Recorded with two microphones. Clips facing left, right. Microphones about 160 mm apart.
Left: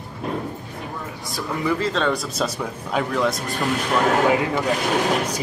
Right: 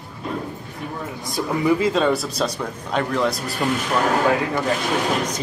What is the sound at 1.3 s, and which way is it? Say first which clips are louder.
Speech: right 4 dB; 10° right (ahead or behind).